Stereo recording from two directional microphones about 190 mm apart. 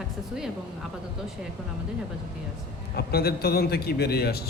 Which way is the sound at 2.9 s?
55° left (ahead or behind).